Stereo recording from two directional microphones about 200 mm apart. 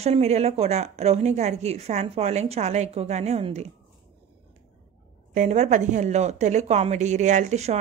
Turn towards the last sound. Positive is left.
turn(degrees=-35)  # may be behind; listen again after turning